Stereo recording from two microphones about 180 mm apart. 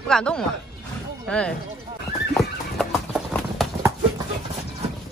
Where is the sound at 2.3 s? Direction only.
Centre (ahead or behind).